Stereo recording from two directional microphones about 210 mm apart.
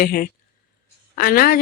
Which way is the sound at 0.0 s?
45° left (ahead or behind).